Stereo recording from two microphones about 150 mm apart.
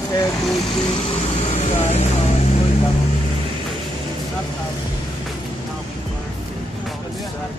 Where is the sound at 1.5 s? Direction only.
45° left (ahead or behind).